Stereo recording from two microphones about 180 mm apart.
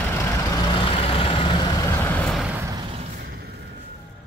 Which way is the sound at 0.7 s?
30° left (ahead or behind).